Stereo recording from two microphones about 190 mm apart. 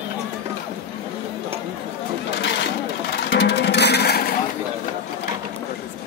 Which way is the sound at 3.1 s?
65° left (ahead or behind).